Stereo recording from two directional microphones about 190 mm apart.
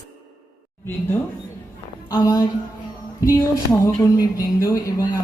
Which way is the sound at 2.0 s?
20° left (ahead or behind).